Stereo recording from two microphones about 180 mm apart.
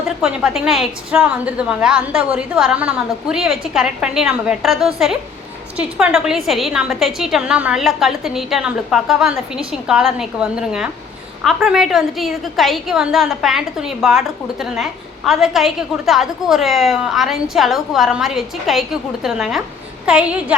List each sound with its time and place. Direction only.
0.2 s a woman's voice: centre (ahead or behind)